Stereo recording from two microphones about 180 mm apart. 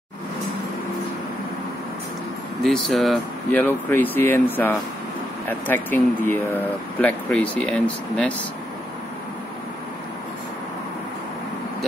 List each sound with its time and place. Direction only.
2.6 s speech: centre (ahead or behind)